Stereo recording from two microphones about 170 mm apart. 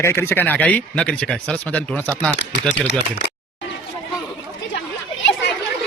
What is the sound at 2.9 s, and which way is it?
Speech, 90° left.